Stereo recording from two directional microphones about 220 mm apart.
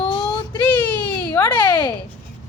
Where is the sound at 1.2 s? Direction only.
10° left (ahead or behind).